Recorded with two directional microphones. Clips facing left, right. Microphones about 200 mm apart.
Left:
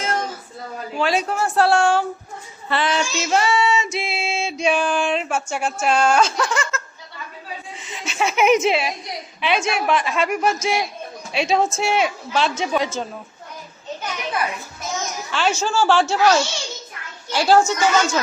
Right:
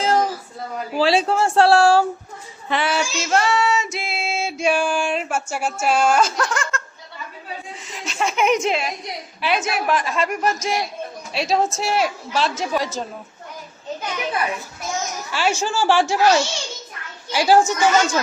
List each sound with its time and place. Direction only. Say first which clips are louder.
0.0 s a sound: right 6 dB; 35° right (ahead or behind)
0.9 s speech: right 3 dB; 30° right (ahead or behind)
2.6 s a woman's voice: even; 10° right (ahead or behind)
3.2 s female singing: even; centre (ahead or behind)
5.8 s speech: even; 5° right (ahead or behind)
8.0 s a woman's voice: left 2 dB; centre (ahead or behind)
15.3 s a woman's voice: left 1 dB; 10° right (ahead or behind)